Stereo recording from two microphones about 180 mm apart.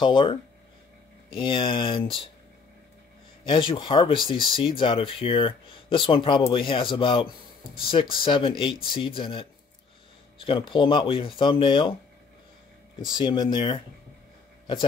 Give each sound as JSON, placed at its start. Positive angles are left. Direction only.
{"t": 0.0, "sound": "speech", "side_deg": 30}
{"t": 3.4, "sound": "speech", "side_deg": 25}
{"t": 10.7, "sound": "speech", "side_deg": 25}
{"t": 13.2, "sound": "speech", "side_deg": 25}